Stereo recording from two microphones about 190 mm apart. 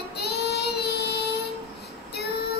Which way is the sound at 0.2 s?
60° left (ahead or behind).